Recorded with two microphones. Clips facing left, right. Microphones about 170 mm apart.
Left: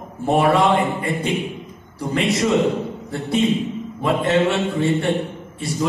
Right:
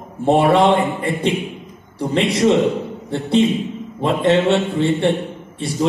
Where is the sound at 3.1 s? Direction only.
25° right (ahead or behind).